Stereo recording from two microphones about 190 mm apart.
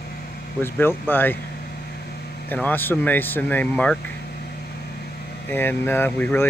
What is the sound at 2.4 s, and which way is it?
Speech, 10° left (ahead or behind).